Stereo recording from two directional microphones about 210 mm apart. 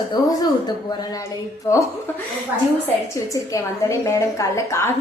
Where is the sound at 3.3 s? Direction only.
15° left (ahead or behind).